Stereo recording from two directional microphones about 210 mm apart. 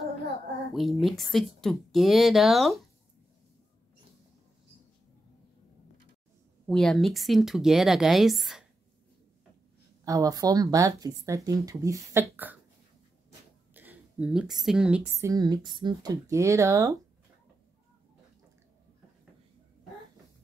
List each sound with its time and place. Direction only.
0.7 s speech: centre (ahead or behind)
6.7 s speech: centre (ahead or behind)
10.0 s speech: 15° right (ahead or behind)
13.7 s speech: 5° right (ahead or behind)